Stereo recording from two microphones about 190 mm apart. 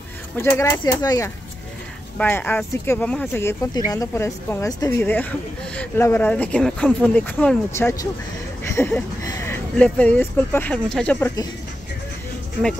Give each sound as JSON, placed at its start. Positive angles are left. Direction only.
{"t": 0.4, "sound": "speech", "side_deg": 15}